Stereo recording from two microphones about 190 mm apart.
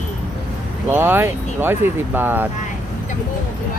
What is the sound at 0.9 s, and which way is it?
Speech, 10° right (ahead or behind).